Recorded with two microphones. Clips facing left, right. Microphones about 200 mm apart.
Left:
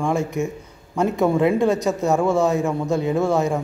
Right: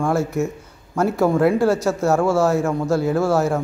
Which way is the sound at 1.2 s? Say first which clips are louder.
Right 1 dB; centre (ahead or behind).